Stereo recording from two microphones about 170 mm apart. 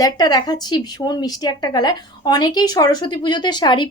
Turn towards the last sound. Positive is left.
turn(degrees=25)  # may be behind; listen again after turning